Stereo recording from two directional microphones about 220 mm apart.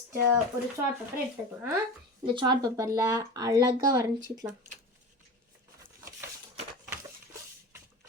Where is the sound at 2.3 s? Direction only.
20° right (ahead or behind).